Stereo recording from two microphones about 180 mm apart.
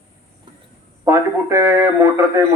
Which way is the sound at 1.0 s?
15° right (ahead or behind).